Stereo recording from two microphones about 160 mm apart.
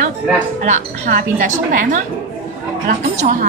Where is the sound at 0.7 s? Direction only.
55° right (ahead or behind).